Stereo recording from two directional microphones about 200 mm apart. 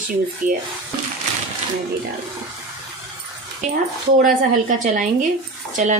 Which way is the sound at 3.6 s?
35° right (ahead or behind).